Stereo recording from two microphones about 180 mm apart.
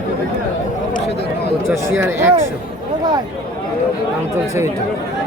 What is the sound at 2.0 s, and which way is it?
Speech, 15° right (ahead or behind).